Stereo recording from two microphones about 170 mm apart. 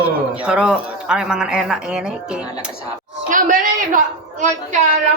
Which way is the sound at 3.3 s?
55° right (ahead or behind).